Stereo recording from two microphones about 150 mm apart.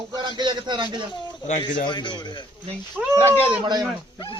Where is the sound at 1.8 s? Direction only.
30° left (ahead or behind).